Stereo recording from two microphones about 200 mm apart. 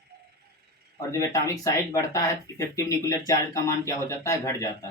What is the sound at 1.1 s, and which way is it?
Speech, 15° left (ahead or behind).